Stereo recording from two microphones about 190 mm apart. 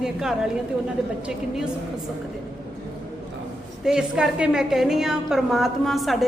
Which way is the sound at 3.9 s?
5° right (ahead or behind).